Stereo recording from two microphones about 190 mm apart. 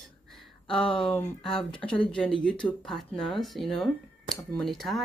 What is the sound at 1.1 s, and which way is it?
Speech, centre (ahead or behind).